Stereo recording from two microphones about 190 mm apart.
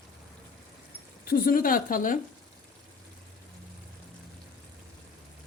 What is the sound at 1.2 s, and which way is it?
Speech, 50° left (ahead or behind).